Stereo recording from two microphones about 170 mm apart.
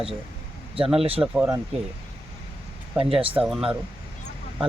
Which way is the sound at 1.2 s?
5° right (ahead or behind).